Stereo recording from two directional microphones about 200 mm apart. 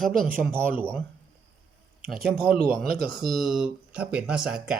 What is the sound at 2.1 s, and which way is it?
Speech, 50° right (ahead or behind).